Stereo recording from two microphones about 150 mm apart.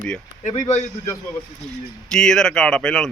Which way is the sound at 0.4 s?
55° left (ahead or behind).